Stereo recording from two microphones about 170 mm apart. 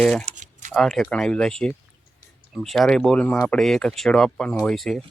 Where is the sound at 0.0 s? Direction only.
5° left (ahead or behind).